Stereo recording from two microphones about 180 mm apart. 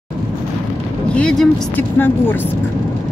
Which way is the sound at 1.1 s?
5° left (ahead or behind).